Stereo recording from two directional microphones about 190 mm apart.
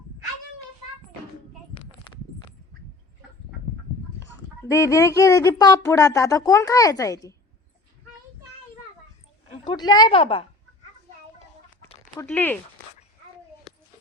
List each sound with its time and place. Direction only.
4.7 s speech: 15° left (ahead or behind)
9.6 s a woman's voice: 20° left (ahead or behind)
12.1 s speech: 10° left (ahead or behind)